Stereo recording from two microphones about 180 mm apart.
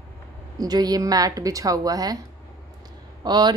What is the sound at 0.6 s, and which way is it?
Speech, 20° right (ahead or behind).